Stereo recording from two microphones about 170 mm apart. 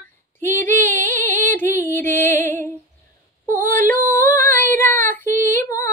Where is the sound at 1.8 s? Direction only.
10° left (ahead or behind).